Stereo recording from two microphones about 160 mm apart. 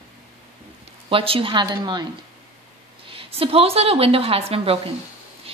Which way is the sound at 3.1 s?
35° right (ahead or behind).